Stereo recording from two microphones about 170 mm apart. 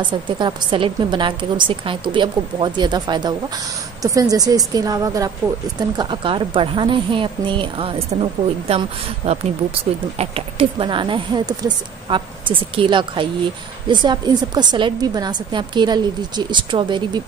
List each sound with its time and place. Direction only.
0.0 s a woman's voice: 25° right (ahead or behind)